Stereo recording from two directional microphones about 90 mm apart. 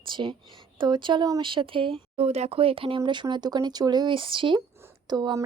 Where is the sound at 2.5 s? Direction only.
90° right.